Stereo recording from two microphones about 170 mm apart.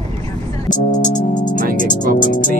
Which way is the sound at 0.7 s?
45° left (ahead or behind).